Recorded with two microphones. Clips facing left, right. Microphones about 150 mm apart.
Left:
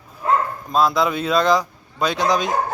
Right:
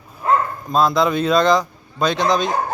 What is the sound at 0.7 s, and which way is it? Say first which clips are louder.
A man's voice: right 2 dB; 5° left (ahead or behind).